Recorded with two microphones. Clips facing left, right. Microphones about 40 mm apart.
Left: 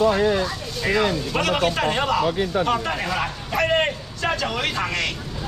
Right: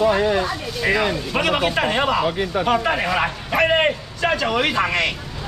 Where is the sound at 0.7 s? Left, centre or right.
Centre.